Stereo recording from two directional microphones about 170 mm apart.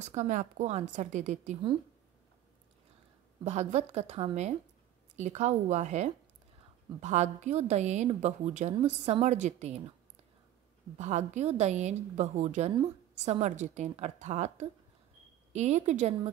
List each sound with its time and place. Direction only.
0.0 s a woman's voice: 45° right (ahead or behind)
3.4 s a woman's voice: 40° right (ahead or behind)
11.0 s a woman's voice: 45° right (ahead or behind)